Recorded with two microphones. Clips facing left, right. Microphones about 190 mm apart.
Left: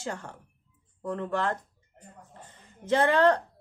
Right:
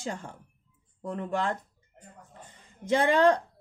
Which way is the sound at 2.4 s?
15° right (ahead or behind).